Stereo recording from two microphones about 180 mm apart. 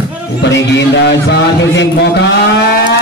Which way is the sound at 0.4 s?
85° left.